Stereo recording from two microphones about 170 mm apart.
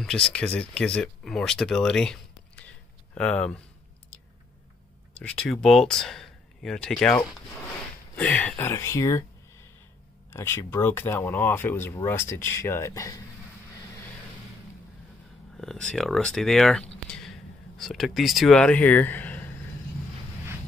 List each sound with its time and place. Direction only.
0.0 s speech: 5° left (ahead or behind)
5.1 s speech: 5° left (ahead or behind)
10.3 s speech: 15° left (ahead or behind)
15.5 s speech: 5° left (ahead or behind)